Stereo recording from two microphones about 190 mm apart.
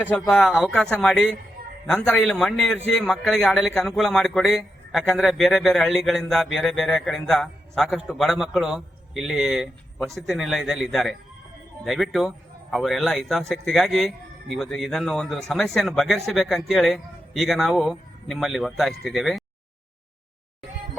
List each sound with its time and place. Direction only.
0.0 s a man's voice: 5° left (ahead or behind)